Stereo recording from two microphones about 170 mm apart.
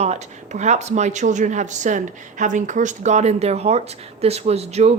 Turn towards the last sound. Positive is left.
turn(degrees=-40)  # may be behind; listen again after turning